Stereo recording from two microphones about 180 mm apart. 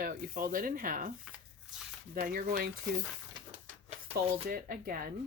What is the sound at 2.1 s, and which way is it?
Speech, 50° right (ahead or behind).